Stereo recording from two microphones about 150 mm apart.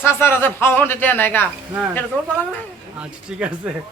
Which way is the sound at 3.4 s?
10° right (ahead or behind).